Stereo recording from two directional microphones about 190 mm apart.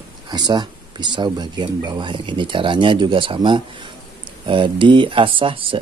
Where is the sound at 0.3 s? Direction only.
20° right (ahead or behind).